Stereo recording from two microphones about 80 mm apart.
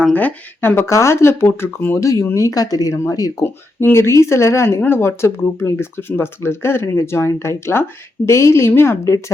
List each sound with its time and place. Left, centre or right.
0.0 s speech: centre
2.0 s speech: left
3.9 s speech: left